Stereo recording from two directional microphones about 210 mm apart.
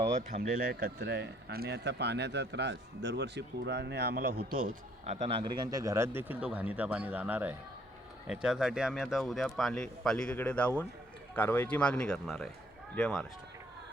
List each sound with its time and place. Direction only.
0.3 s speech: 40° right (ahead or behind); by 13.2 s 5° left (ahead or behind)